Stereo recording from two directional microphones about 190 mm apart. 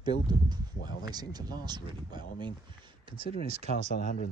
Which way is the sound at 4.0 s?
50° left (ahead or behind).